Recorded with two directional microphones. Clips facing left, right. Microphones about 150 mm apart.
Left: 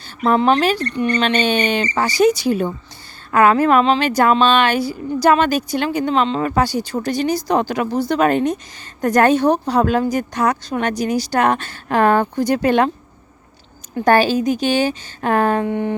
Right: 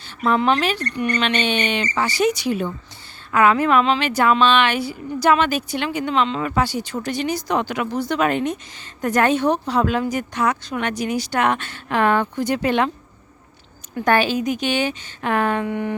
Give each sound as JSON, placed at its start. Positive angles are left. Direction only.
{"t": 0.2, "sound": "a woman's voice", "side_deg": 40}
{"t": 13.9, "sound": "a woman's voice", "side_deg": 35}